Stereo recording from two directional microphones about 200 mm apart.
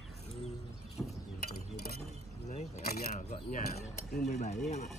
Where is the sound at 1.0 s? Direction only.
5° left (ahead or behind).